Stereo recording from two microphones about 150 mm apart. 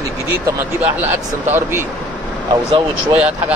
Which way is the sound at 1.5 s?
15° right (ahead or behind).